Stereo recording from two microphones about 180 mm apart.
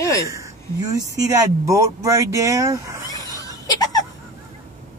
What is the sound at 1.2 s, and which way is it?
Speech, 20° right (ahead or behind).